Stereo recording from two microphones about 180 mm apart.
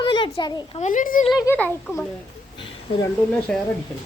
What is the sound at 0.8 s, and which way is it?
Speech, 45° left (ahead or behind).